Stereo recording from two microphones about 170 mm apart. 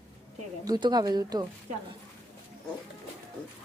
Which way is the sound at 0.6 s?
25° right (ahead or behind).